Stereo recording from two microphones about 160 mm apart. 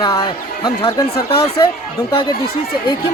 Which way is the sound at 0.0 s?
30° left (ahead or behind).